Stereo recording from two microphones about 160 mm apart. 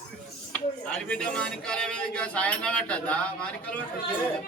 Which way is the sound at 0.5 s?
5° left (ahead or behind).